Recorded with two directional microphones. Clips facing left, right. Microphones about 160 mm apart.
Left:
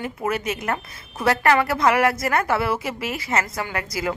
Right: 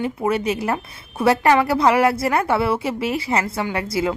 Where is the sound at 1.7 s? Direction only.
30° right (ahead or behind).